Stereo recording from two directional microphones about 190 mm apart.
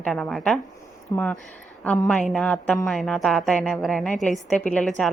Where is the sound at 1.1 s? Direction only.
15° left (ahead or behind).